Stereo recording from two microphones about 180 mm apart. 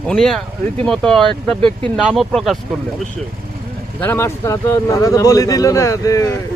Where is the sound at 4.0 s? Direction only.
10° left (ahead or behind).